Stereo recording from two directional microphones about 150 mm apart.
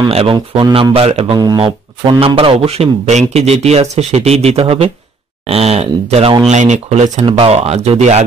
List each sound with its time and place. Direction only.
0.1 s a man's voice: 35° right (ahead or behind)
0.9 s a man's voice: 40° right (ahead or behind)
1.4 s a man's voice: 30° right (ahead or behind); by 7.2 s 50° right (ahead or behind)
7.2 s speech: 40° right (ahead or behind)